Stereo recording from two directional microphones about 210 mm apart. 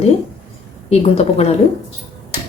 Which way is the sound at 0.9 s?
30° left (ahead or behind).